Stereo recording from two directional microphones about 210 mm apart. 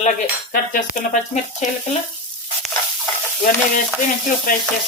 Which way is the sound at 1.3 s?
35° left (ahead or behind).